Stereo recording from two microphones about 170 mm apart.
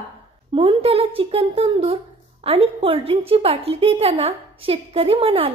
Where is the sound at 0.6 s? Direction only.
35° right (ahead or behind).